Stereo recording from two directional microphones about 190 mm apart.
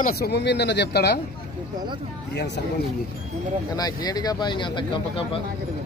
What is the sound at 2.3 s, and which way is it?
Speech, 65° left (ahead or behind).